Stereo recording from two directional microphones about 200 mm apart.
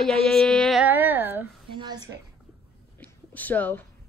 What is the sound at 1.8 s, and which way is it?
Speech, 20° right (ahead or behind).